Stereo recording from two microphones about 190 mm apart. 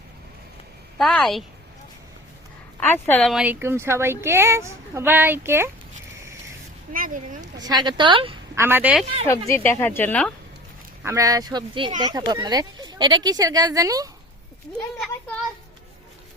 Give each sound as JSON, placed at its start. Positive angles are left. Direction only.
{"t": 0.9, "sound": "speech", "side_deg": 0}
{"t": 2.8, "sound": "speech", "side_deg": 10}
{"t": 6.9, "sound": "speech", "side_deg": -45}
{"t": 7.6, "sound": "speech", "side_deg": -20}
{"t": 8.5, "sound": "speech", "side_deg": -10}
{"t": 9.5, "sound": "speech", "side_deg": 15}
{"t": 11.0, "sound": "speech", "side_deg": -15}